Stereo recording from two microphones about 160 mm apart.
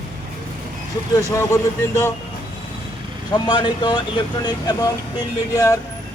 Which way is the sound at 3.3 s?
30° left (ahead or behind).